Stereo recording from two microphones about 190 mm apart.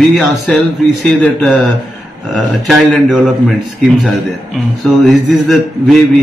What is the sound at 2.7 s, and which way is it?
Speech, centre (ahead or behind).